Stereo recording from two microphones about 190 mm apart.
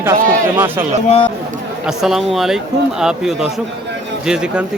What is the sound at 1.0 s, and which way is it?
Speech, 35° left (ahead or behind).